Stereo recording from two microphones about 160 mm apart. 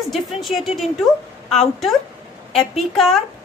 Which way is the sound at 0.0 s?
Centre (ahead or behind).